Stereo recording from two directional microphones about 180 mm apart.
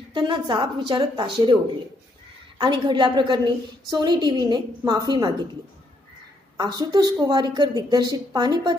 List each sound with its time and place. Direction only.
0.1 s a woman's voice: 25° right (ahead or behind)
2.6 s a woman's voice: 25° right (ahead or behind)
6.5 s a woman's voice: 25° right (ahead or behind)